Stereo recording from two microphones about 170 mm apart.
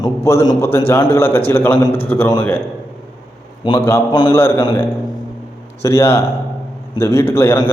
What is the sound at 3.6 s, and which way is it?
A man's voice, 25° left (ahead or behind).